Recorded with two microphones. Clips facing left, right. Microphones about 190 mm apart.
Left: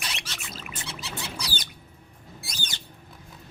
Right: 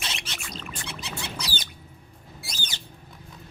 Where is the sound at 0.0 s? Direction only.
25° right (ahead or behind).